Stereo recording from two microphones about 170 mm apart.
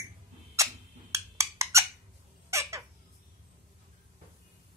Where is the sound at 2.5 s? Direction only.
15° right (ahead or behind).